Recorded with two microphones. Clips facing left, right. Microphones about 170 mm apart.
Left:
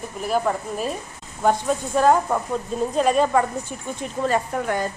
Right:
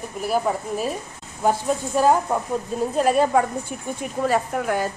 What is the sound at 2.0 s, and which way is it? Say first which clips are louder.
A woman's voice: left 1 dB; 5° right (ahead or behind).